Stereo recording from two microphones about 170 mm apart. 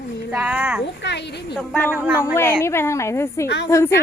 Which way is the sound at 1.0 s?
85° left.